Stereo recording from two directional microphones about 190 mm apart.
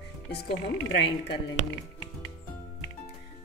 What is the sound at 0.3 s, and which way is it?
Speech, 60° left (ahead or behind).